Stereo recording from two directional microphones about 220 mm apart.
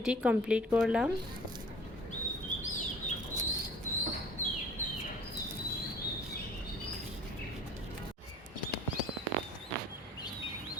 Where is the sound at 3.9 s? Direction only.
35° left (ahead or behind).